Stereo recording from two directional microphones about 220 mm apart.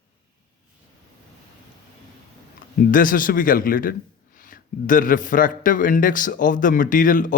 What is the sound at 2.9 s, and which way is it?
A man's voice, 40° left (ahead or behind).